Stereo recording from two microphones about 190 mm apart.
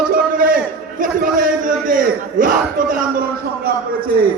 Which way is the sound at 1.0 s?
45° right (ahead or behind).